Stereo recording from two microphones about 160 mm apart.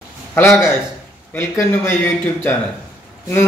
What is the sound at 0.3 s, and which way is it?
A man's voice, 15° left (ahead or behind).